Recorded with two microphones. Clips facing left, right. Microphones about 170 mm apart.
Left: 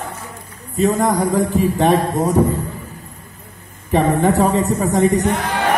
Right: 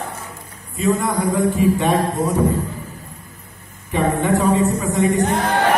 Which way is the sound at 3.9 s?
40° left (ahead or behind).